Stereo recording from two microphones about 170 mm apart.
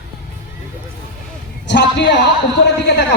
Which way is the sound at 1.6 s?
85° left.